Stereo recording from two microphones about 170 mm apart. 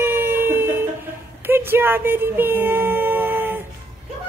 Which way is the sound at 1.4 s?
15° right (ahead or behind).